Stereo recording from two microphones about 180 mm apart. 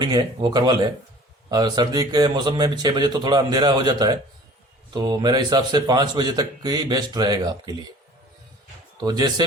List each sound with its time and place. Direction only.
0.0 s speech: 25° right (ahead or behind)
9.0 s speech: 20° right (ahead or behind)